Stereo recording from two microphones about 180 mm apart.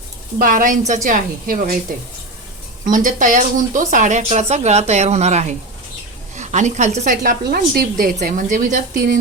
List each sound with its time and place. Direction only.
0.3 s a woman's voice: 50° right (ahead or behind)
2.9 s a woman's voice: 45° right (ahead or behind)